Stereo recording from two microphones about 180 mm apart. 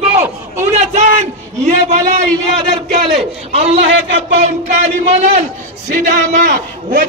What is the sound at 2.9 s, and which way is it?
A man's voice, 35° right (ahead or behind).